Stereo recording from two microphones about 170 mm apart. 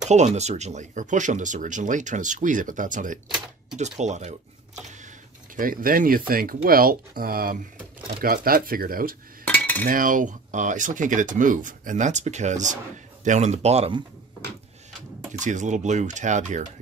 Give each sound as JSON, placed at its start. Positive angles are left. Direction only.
{"t": 0.1, "sound": "speech", "side_deg": -40}
{"t": 5.6, "sound": "speech", "side_deg": -55}
{"t": 9.5, "sound": "cutlery", "side_deg": 10}
{"t": 9.8, "sound": "speech", "side_deg": -50}
{"t": 15.3, "sound": "speech", "side_deg": -45}